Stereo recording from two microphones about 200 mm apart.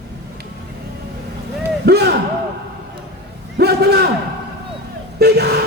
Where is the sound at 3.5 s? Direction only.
55° right (ahead or behind).